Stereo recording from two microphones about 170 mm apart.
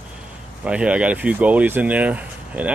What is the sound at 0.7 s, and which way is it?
Speech, 5° right (ahead or behind).